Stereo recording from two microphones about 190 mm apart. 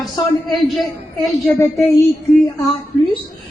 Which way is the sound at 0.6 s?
Centre (ahead or behind).